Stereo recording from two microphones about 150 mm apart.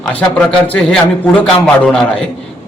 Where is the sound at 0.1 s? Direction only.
10° left (ahead or behind).